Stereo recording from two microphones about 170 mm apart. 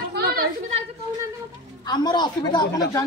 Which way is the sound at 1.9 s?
25° left (ahead or behind).